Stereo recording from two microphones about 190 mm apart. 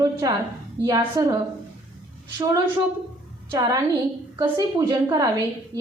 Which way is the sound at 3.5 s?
20° right (ahead or behind).